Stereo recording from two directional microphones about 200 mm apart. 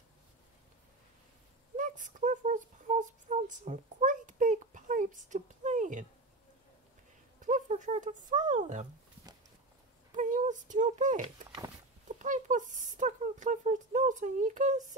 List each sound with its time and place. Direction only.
1.8 s a sound: 40° right (ahead or behind)
7.3 s speech: 40° right (ahead or behind)
10.1 s speech: 40° right (ahead or behind)